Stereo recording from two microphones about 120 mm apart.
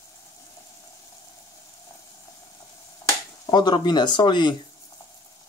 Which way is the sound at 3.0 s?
35° left (ahead or behind).